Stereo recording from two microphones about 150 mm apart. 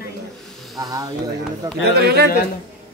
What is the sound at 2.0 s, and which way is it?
Speech, 90° right.